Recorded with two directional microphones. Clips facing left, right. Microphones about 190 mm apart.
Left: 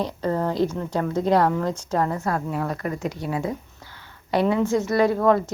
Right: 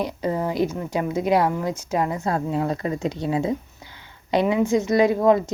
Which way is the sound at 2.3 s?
25° right (ahead or behind).